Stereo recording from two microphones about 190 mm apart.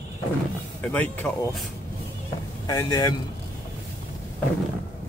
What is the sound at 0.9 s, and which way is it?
Speech, 5° left (ahead or behind).